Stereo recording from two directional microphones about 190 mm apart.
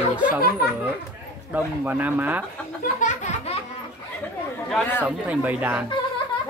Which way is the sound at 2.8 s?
40° left (ahead or behind).